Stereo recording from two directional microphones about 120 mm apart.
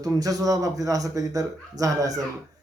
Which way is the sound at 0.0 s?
30° right (ahead or behind).